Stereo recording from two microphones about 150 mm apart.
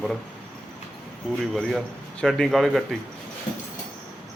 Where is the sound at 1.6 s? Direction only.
5° left (ahead or behind).